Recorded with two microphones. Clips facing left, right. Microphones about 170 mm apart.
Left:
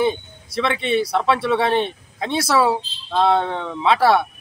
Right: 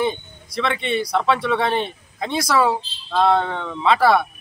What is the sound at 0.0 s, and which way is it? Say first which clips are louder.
Speech: left 2 dB; 5° left (ahead or behind).